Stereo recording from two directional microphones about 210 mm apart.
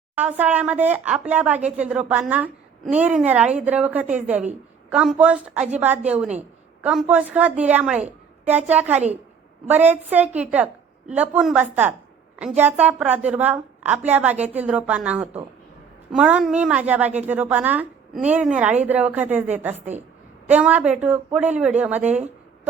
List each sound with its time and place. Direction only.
0.2 s speech: 10° right (ahead or behind)
19.9 s a woman's voice: 35° right (ahead or behind)
20.5 s speech: 5° right (ahead or behind)